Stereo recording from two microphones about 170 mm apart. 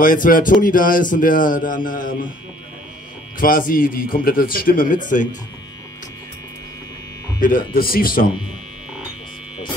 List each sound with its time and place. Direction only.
0.0 s speech: 55° left (ahead or behind)
3.3 s a man's voice: 55° left (ahead or behind)
7.3 s a man's voice: 55° left (ahead or behind)